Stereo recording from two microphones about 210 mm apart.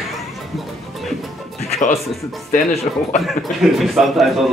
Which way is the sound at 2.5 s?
30° left (ahead or behind).